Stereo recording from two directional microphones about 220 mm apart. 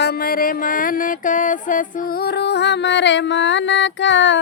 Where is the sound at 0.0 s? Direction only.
40° left (ahead or behind).